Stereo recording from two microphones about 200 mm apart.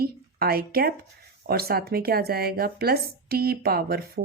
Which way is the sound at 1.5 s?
50° right (ahead or behind).